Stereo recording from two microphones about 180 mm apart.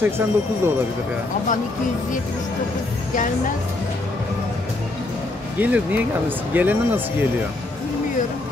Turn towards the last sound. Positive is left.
turn(degrees=-10)  # may be behind; listen again after turning